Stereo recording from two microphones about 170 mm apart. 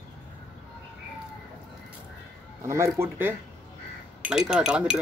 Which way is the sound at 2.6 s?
15° right (ahead or behind).